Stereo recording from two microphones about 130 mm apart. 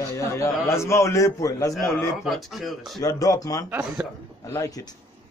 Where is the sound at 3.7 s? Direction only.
5° right (ahead or behind).